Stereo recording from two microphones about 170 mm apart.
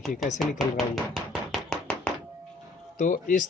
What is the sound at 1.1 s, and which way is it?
Chopping, centre (ahead or behind).